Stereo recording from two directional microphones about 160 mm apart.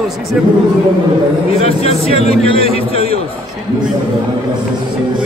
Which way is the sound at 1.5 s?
40° left (ahead or behind).